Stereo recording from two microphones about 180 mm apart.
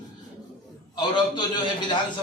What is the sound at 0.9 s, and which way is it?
Speech, 25° left (ahead or behind).